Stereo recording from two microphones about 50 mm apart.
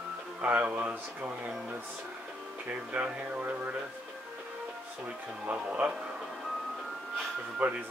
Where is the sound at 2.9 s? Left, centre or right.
Right.